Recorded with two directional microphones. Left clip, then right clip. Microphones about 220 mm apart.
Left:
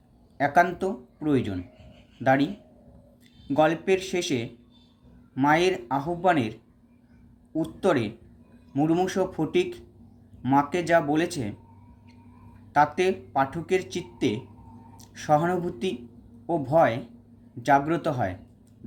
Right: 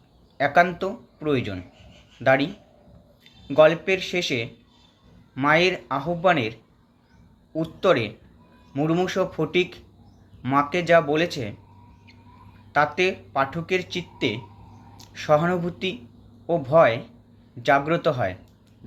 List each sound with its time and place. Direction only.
0.3 s speech: 15° left (ahead or behind)
12.7 s speech: 15° left (ahead or behind)